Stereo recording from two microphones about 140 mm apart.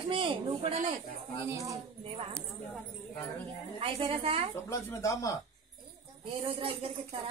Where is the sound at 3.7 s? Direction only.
40° right (ahead or behind).